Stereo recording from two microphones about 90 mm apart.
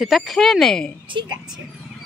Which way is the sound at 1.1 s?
60° right (ahead or behind).